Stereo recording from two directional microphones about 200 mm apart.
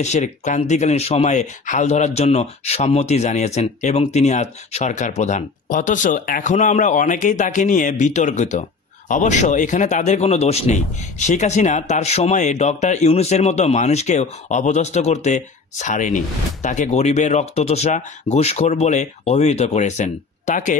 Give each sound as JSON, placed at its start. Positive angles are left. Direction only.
{"t": 0.0, "sound": "speech", "side_deg": 35}